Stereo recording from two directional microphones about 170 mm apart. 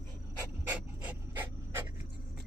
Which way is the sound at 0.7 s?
10° right (ahead or behind).